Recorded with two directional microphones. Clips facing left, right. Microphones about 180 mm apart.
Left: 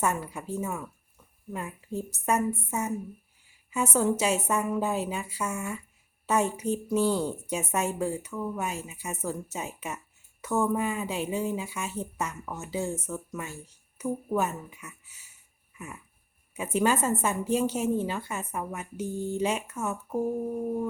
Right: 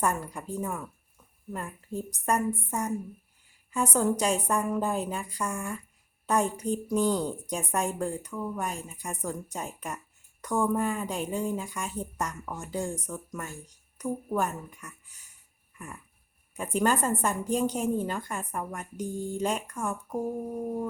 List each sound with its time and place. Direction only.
0.0 s speech: 5° left (ahead or behind)
16.6 s speech: 5° left (ahead or behind)